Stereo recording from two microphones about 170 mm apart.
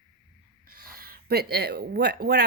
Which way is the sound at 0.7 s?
60° right (ahead or behind).